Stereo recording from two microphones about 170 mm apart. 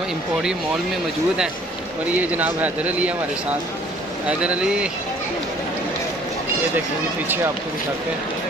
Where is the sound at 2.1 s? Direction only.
10° right (ahead or behind).